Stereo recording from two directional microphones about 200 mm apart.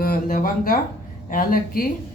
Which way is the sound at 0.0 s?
45° left (ahead or behind).